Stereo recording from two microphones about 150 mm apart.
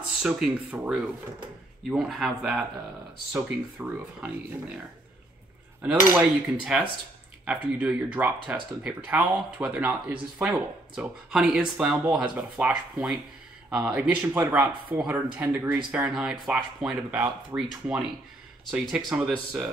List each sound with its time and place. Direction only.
0.2 s speech: 5° right (ahead or behind)
5.8 s speech: 10° right (ahead or behind)